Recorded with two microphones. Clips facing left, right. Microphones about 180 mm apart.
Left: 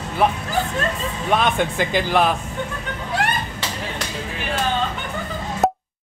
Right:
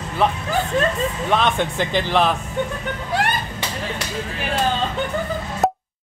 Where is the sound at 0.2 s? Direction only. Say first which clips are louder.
Even; 10° left (ahead or behind).